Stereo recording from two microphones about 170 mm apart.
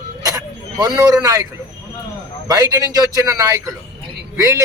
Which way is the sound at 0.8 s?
20° right (ahead or behind).